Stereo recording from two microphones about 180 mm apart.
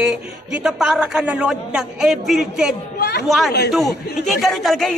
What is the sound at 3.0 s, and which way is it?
Chatter, 65° left (ahead or behind).